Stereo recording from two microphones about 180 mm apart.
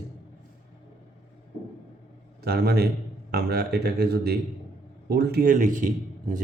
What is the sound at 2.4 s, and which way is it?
A man's voice, 65° right (ahead or behind).